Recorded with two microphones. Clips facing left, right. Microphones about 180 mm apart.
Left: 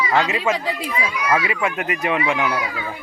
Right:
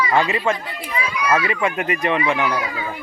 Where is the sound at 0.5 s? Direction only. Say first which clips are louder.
Left 4 dB; 85° left.